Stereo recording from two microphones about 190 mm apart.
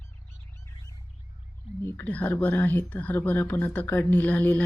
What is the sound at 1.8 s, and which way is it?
Speech, 15° left (ahead or behind).